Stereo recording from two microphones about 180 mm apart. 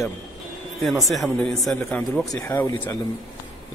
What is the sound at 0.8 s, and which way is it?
A man's voice, centre (ahead or behind).